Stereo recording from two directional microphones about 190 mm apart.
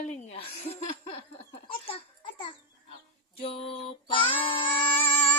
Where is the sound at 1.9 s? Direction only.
30° left (ahead or behind).